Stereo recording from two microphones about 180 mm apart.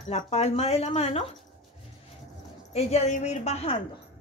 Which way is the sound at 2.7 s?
40° left (ahead or behind).